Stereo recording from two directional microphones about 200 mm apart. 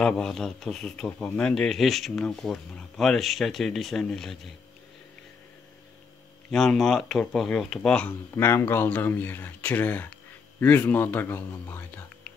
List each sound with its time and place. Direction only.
0.0 s speech: centre (ahead or behind)
6.5 s speech: centre (ahead or behind)